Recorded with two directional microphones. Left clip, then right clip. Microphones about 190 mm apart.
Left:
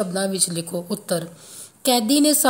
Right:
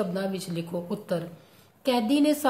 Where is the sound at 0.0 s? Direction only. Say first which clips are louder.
Left 6 dB; 35° left (ahead or behind).